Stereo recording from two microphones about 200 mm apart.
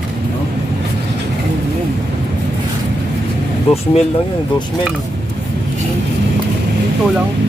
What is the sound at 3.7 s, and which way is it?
Speech, 30° left (ahead or behind).